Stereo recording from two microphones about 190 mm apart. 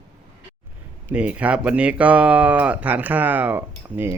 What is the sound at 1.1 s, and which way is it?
Speech, 5° right (ahead or behind).